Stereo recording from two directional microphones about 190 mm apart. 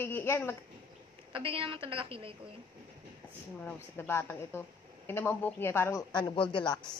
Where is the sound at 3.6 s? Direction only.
10° left (ahead or behind); by 6.8 s 25° left (ahead or behind).